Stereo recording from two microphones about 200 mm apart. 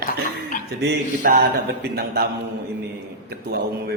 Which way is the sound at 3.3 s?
55° right (ahead or behind).